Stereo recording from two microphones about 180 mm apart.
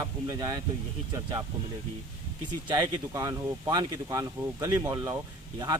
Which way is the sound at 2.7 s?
20° right (ahead or behind).